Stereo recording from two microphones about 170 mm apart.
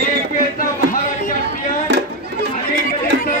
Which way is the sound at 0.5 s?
55° left (ahead or behind).